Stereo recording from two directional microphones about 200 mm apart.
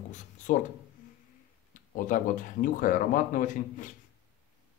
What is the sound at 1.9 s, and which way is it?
Speech, 40° left (ahead or behind).